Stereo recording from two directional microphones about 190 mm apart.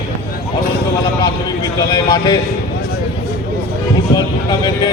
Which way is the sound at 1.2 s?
20° left (ahead or behind).